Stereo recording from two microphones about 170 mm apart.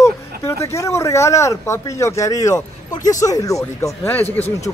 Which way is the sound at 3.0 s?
20° left (ahead or behind).